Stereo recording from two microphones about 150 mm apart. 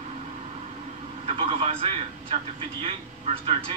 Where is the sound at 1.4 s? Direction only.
35° right (ahead or behind).